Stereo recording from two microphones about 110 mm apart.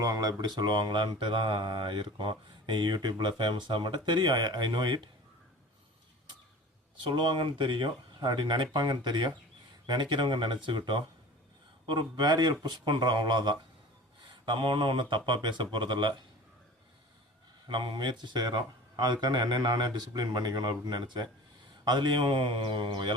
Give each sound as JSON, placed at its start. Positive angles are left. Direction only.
{"t": 0.0, "sound": "mantra", "side_deg": -35}
{"t": 7.0, "sound": "mantra", "side_deg": -45}
{"t": 11.9, "sound": "speech", "side_deg": -40}
{"t": 14.4, "sound": "mantra", "side_deg": -45}
{"t": 17.7, "sound": "speech", "side_deg": -45}
{"t": 21.8, "sound": "mantra", "side_deg": -45}